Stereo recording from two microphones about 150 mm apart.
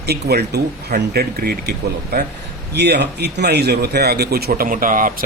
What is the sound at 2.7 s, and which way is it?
A man's voice, 90° right.